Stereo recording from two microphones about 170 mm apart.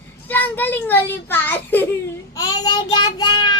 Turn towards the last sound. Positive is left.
turn(degrees=25)  # may be behind; listen again after turning